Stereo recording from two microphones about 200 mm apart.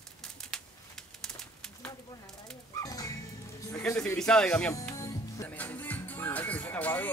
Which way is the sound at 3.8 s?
10° left (ahead or behind).